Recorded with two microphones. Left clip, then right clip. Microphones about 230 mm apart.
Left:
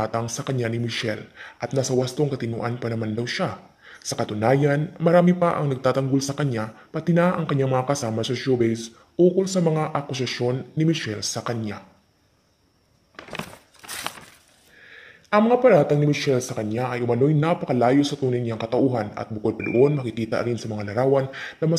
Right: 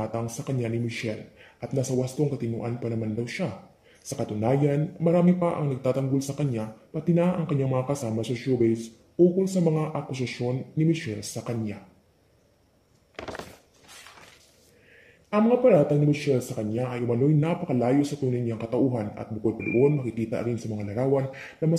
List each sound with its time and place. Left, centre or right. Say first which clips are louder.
0.0 s speech: left 6 dB; centre
15.2 s speech: left 4 dB; centre